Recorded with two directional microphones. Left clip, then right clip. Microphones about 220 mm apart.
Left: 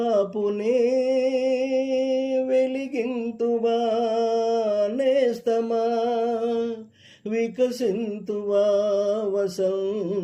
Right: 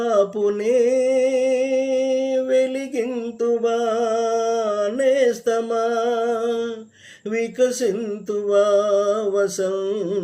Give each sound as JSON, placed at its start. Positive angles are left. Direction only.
{"t": 0.0, "sound": "a sound", "side_deg": -20}
{"t": 1.7, "sound": "music", "side_deg": -20}
{"t": 7.3, "sound": "mantra", "side_deg": -15}